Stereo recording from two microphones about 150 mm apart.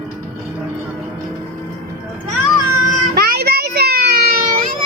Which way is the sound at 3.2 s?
90° right.